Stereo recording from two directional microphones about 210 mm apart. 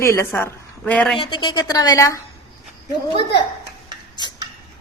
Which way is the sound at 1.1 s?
20° left (ahead or behind).